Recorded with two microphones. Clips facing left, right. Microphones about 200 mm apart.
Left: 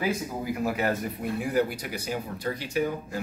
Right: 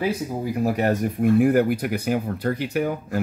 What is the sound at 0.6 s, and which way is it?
Speech, 40° right (ahead or behind).